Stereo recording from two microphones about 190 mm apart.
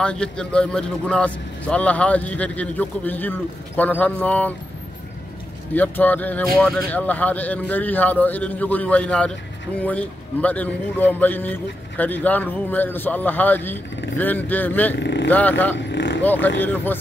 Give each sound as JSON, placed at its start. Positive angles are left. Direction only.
{"t": 0.0, "sound": "speech", "side_deg": 5}
{"t": 5.8, "sound": "speech", "side_deg": 10}
{"t": 15.9, "sound": "vehicle", "side_deg": 70}
{"t": 16.2, "sound": "speech", "side_deg": 10}